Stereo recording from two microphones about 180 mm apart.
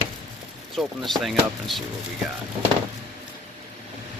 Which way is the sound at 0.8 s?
Centre (ahead or behind).